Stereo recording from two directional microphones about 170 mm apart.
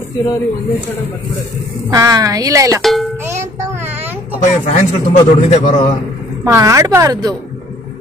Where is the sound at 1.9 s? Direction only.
20° right (ahead or behind).